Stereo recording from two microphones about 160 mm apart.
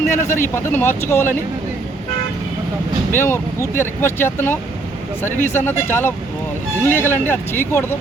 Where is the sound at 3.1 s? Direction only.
15° left (ahead or behind).